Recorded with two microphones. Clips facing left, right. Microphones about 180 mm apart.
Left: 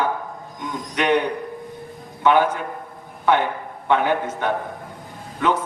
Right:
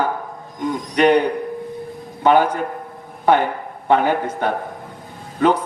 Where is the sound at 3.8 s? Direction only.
40° right (ahead or behind).